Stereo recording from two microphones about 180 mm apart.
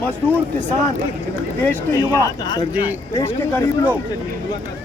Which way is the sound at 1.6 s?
10° left (ahead or behind).